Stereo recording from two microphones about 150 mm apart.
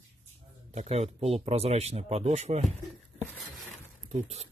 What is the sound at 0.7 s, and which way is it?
Speech, 45° right (ahead or behind).